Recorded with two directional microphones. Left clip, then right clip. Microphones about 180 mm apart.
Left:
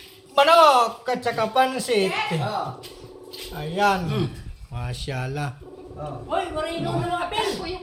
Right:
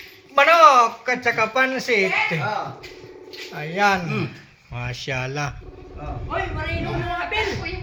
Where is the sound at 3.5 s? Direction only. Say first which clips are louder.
Right 2 dB; 20° right (ahead or behind).